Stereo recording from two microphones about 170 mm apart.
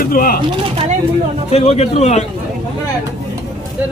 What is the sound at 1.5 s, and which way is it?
Speech, 35° left (ahead or behind).